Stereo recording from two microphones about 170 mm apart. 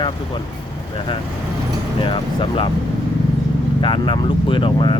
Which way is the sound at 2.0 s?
30° left (ahead or behind).